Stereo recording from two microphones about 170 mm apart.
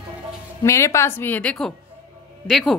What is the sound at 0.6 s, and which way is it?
A woman's voice, 15° left (ahead or behind).